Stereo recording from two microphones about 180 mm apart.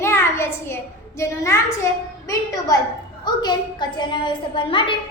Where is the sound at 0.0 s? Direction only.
15° left (ahead or behind).